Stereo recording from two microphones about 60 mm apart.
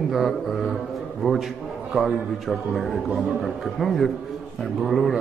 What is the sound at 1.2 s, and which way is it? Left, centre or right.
Speech, centre.